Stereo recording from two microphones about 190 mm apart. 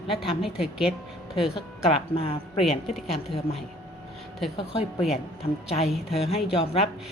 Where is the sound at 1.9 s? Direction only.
30° left (ahead or behind).